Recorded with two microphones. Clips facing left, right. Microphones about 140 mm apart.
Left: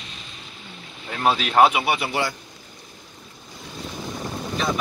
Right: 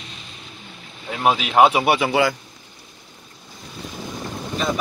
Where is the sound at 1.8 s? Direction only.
70° right (ahead or behind).